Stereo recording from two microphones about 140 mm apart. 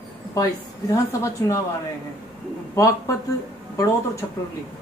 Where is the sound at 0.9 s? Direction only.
20° left (ahead or behind).